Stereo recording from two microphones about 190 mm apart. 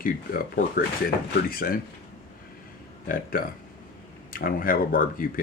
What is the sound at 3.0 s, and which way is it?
Speech, 50° left (ahead or behind).